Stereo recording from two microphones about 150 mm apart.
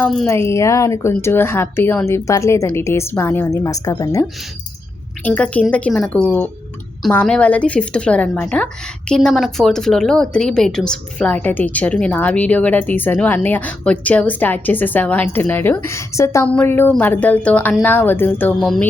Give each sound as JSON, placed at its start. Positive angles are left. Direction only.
{"t": 0.0, "sound": "speech", "side_deg": 5}
{"t": 0.3, "sound": "a woman's voice", "side_deg": 15}
{"t": 5.2, "sound": "a woman's voice", "side_deg": 10}